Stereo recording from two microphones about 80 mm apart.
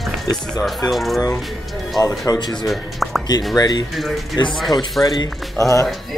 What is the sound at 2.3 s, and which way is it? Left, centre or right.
Speech, left.